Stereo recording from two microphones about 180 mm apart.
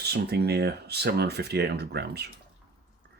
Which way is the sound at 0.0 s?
65° right (ahead or behind).